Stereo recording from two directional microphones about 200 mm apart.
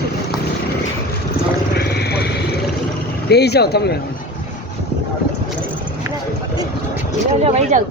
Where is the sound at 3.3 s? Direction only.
55° left (ahead or behind).